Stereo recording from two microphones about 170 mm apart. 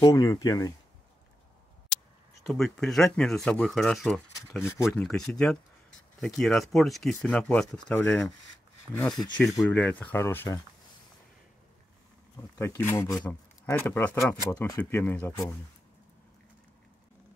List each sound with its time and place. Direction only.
0.0 s speech: 20° left (ahead or behind)
2.5 s speech: centre (ahead or behind)
4.5 s speech: 15° left (ahead or behind)
4.9 s speech: 5° left (ahead or behind)
9.1 s speech: 25° left (ahead or behind)
9.4 s speech: centre (ahead or behind)
12.5 s speech: 15° left (ahead or behind)